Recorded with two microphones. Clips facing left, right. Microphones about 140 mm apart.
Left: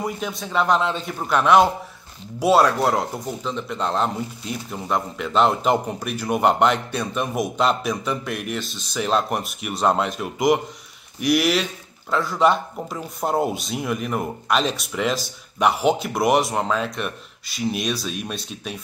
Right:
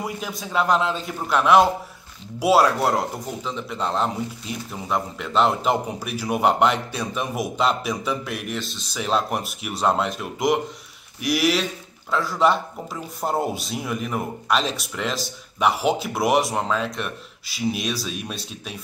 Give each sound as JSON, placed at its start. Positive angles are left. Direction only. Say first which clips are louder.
{"t": 0.4, "sound": "speech", "louder": "even", "side_deg": -5}